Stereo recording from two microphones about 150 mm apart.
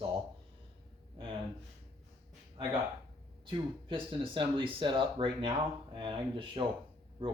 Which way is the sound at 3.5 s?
35° right (ahead or behind).